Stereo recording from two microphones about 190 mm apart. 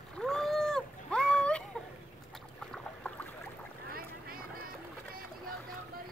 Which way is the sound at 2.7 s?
5° left (ahead or behind).